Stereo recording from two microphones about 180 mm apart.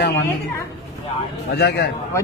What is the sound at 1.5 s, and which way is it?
Speech, 65° left (ahead or behind).